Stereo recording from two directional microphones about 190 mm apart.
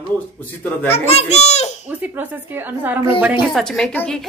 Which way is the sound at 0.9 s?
30° left (ahead or behind).